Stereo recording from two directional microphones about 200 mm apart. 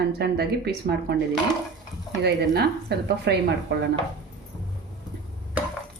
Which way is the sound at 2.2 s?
55° right (ahead or behind).